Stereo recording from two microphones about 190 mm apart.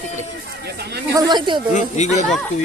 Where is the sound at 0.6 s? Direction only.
60° right (ahead or behind).